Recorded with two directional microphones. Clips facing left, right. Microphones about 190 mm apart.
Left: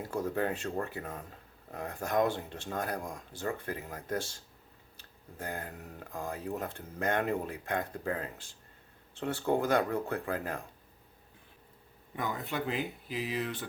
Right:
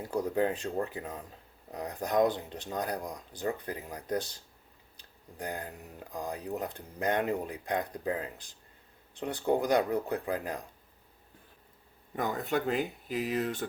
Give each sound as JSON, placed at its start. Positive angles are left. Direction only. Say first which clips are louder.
{"t": 0.1, "sound": "speech", "louder": "right 3 dB", "side_deg": -20}
{"t": 12.1, "sound": "speech", "louder": "right 4 dB", "side_deg": -45}